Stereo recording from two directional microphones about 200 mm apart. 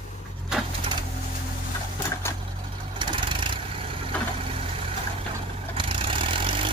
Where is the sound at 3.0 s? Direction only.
25° right (ahead or behind).